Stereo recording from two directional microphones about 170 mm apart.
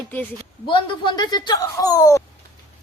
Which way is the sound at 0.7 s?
25° left (ahead or behind).